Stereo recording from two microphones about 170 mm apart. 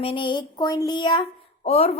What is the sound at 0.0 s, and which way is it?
Speech, 30° left (ahead or behind).